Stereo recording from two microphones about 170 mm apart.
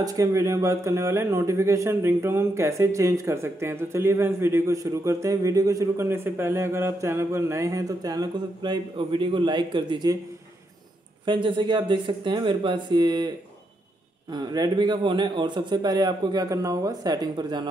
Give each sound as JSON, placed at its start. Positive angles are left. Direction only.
{"t": 0.0, "sound": "speech", "side_deg": -20}
{"t": 11.2, "sound": "a man's voice", "side_deg": -30}
{"t": 14.3, "sound": "a man's voice", "side_deg": -25}